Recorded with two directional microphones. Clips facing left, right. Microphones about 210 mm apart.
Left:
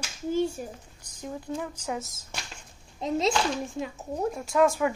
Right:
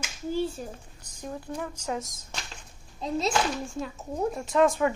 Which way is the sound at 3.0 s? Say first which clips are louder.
Left 1 dB; 20° left (ahead or behind).